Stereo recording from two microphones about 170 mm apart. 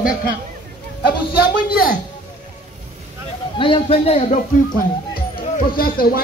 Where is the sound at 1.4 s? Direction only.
60° left (ahead or behind).